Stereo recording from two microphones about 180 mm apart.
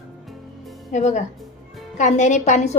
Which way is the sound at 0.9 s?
40° left (ahead or behind).